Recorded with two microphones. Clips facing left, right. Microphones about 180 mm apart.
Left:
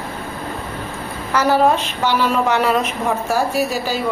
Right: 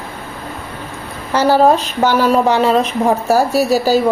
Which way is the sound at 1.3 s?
30° right (ahead or behind).